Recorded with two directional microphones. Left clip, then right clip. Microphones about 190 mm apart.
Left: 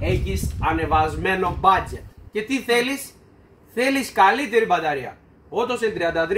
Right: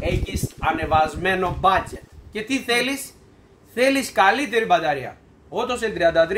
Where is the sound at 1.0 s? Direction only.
20° right (ahead or behind).